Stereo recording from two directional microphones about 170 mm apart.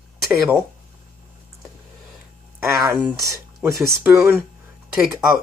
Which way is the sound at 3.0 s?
20° right (ahead or behind).